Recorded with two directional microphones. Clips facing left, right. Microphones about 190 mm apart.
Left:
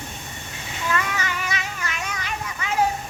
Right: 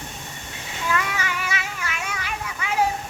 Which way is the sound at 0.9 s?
10° right (ahead or behind).